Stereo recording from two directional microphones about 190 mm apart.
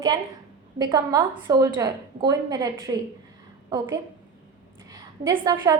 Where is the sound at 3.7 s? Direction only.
15° right (ahead or behind).